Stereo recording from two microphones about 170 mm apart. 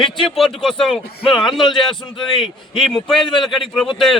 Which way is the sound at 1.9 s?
30° left (ahead or behind).